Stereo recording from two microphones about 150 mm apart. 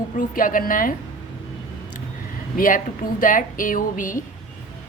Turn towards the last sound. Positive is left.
turn(degrees=65)  # may be behind; listen again after turning